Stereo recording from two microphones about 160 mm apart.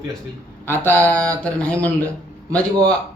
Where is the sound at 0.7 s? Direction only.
15° left (ahead or behind).